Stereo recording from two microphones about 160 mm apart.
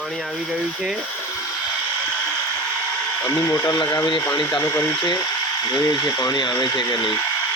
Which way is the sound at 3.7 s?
25° left (ahead or behind).